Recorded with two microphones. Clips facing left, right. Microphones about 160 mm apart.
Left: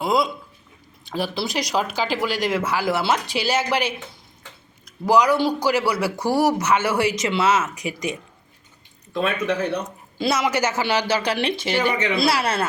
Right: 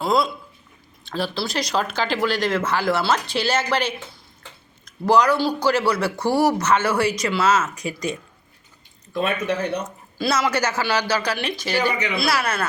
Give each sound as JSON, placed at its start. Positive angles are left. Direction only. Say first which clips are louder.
{"t": 0.0, "sound": "speech", "louder": "even", "side_deg": 15}
{"t": 10.2, "sound": "speech", "louder": "even", "side_deg": 20}
{"t": 12.1, "sound": "speech", "louder": "left 2 dB", "side_deg": 30}